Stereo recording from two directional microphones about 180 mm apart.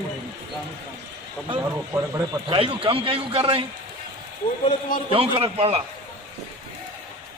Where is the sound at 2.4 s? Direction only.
30° right (ahead or behind).